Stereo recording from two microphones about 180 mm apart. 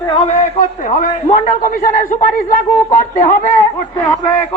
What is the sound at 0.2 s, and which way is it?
A man's voice, 40° left (ahead or behind).